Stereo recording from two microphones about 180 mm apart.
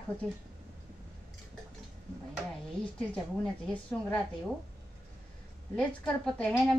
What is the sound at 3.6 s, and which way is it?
Speech, 5° left (ahead or behind).